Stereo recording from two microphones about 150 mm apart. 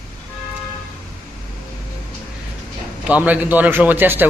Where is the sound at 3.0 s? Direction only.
10° right (ahead or behind).